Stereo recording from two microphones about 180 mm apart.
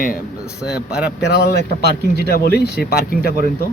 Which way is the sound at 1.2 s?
70° left (ahead or behind).